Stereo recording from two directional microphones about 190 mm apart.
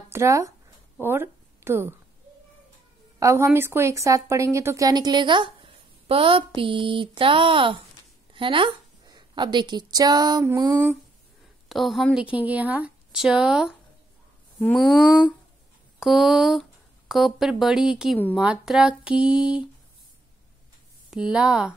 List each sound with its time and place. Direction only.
0.1 s a woman's voice: 15° right (ahead or behind)
3.2 s a woman's voice: 15° right (ahead or behind)
11.7 s speech: centre (ahead or behind)
16.0 s speech: centre (ahead or behind)
21.1 s speech: 5° right (ahead or behind)